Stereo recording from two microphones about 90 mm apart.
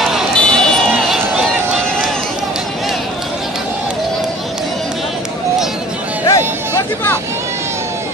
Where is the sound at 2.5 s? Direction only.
5° right (ahead or behind).